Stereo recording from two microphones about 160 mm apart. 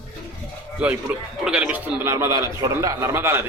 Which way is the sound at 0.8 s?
10° right (ahead or behind).